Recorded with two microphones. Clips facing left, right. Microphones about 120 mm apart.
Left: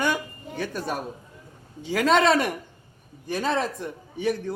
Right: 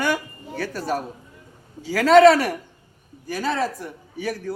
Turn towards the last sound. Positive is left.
turn(degrees=20)  # may be behind; listen again after turning